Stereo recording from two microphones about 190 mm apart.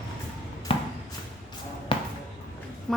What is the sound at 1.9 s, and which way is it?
Basketball bounce, 25° left (ahead or behind).